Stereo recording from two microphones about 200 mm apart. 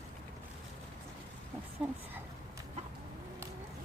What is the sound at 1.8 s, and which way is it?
Speech, 5° right (ahead or behind).